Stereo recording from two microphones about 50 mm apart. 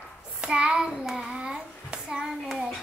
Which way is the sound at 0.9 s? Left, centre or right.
Centre.